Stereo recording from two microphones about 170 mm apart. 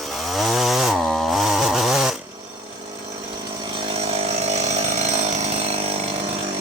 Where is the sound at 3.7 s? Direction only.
30° right (ahead or behind).